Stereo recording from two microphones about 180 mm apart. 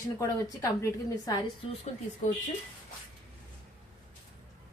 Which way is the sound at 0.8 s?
20° left (ahead or behind).